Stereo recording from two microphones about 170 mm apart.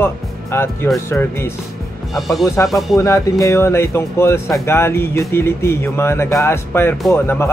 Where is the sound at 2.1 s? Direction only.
Centre (ahead or behind).